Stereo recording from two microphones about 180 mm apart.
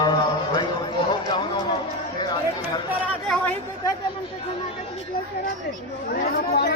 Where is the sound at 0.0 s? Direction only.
25° left (ahead or behind).